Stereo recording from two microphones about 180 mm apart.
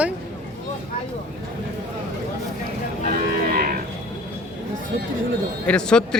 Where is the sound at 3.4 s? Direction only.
55° right (ahead or behind).